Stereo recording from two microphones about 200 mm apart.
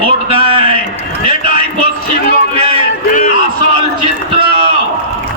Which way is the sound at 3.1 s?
40° left (ahead or behind).